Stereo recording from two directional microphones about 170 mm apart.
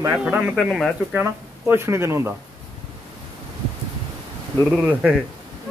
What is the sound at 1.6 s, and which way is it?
Speech, 15° right (ahead or behind).